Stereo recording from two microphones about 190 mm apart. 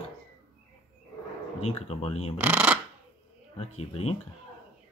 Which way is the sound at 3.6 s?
30° left (ahead or behind).